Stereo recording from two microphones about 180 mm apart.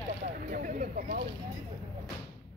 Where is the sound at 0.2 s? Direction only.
45° right (ahead or behind).